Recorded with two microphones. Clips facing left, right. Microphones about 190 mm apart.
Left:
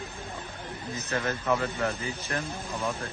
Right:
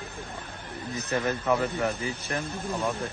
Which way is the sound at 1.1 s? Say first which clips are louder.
Right 2 dB; 15° right (ahead or behind).